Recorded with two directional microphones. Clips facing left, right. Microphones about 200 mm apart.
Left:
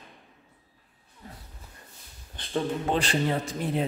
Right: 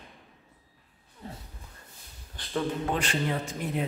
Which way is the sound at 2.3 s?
25° left (ahead or behind).